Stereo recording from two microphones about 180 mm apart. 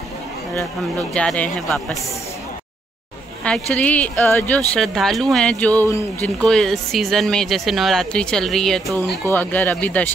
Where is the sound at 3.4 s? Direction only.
5° left (ahead or behind).